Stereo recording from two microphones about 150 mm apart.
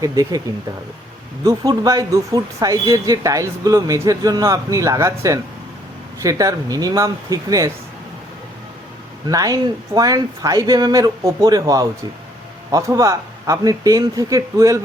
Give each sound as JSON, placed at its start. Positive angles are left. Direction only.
{"t": 0.0, "sound": "speech", "side_deg": -25}
{"t": 1.5, "sound": "speech", "side_deg": -25}
{"t": 9.2, "sound": "speech", "side_deg": -25}